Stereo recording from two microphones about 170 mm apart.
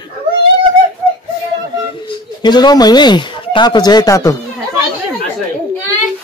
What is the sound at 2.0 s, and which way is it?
Speech, 25° left (ahead or behind).